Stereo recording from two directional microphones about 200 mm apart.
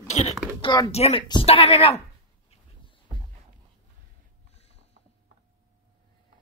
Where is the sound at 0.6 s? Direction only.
25° left (ahead or behind).